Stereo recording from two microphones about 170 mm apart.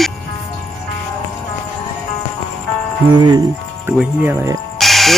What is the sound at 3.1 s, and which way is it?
Speech, 25° right (ahead or behind).